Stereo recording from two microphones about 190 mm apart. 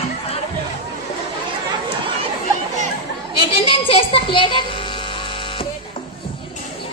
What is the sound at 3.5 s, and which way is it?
Speech, 30° left (ahead or behind).